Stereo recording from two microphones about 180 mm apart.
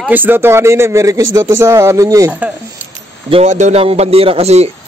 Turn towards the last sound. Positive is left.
turn(degrees=-35)  # may be behind; listen again after turning